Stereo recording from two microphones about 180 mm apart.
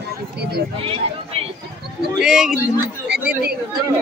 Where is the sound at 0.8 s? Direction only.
30° right (ahead or behind).